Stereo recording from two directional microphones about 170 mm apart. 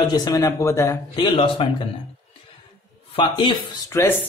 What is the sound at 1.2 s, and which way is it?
Speech, 30° left (ahead or behind).